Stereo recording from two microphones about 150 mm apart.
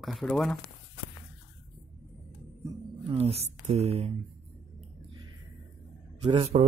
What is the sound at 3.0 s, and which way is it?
A woman's voice, 40° right (ahead or behind).